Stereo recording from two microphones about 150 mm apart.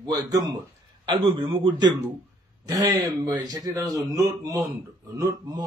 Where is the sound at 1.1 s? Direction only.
35° right (ahead or behind).